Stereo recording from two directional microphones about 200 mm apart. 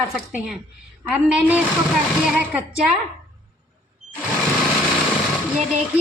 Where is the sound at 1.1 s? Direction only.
10° right (ahead or behind).